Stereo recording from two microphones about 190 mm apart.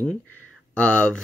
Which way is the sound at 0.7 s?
5° left (ahead or behind).